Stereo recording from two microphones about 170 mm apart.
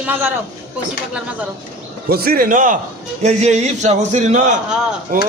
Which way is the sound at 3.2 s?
40° right (ahead or behind).